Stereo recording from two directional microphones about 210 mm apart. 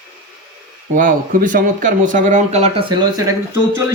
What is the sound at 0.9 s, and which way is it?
Speech, 40° right (ahead or behind).